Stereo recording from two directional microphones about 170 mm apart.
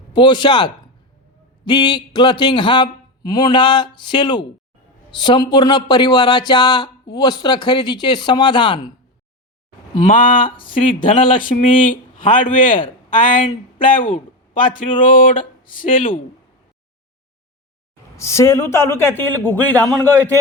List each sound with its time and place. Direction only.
0.1 s speech: 25° left (ahead or behind)
10.1 s speech: 55° left (ahead or behind)
10.6 s speech: 30° left (ahead or behind)
11.3 s a man's voice: 55° left (ahead or behind)
14.1 s a sound: 50° left (ahead or behind)
15.0 s speech: 55° left (ahead or behind)
18.2 s a man's voice: 15° left (ahead or behind)